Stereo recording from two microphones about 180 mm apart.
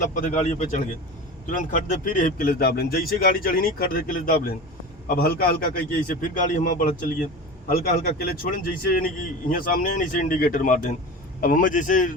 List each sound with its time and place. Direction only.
0.0 s a man's voice: 45° left (ahead or behind)
7.7 s a man's voice: 55° left (ahead or behind)